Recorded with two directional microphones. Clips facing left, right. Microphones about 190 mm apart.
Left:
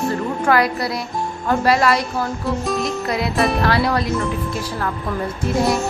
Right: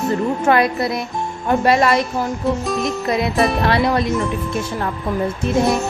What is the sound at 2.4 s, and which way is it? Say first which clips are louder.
Music: right 2 dB; centre (ahead or behind).